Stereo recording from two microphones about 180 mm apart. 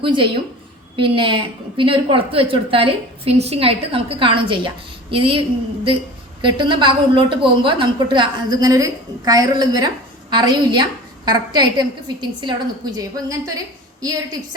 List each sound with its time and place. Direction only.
0.0 s a woman's voice: 30° right (ahead or behind)